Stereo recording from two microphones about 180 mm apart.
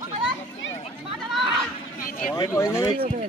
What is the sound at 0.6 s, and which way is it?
Chatter, 90° left.